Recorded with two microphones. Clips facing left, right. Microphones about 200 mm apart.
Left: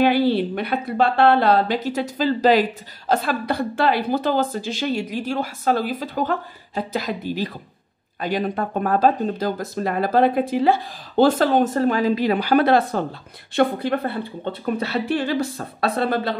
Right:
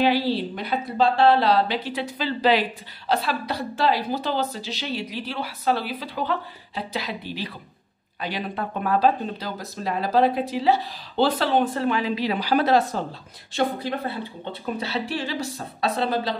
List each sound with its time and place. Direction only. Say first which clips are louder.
0.0 s a woman's voice: left 4 dB; 55° left (ahead or behind)